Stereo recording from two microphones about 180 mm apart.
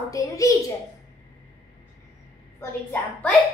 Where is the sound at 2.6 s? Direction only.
10° left (ahead or behind).